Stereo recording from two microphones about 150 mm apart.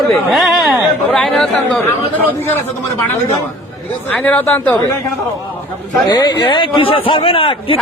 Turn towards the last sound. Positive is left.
turn(degrees=35)  # may be behind; listen again after turning